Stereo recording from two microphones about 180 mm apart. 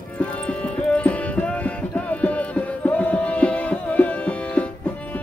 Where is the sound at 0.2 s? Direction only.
5° left (ahead or behind).